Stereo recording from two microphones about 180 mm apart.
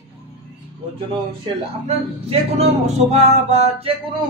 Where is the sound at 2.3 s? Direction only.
35° right (ahead or behind).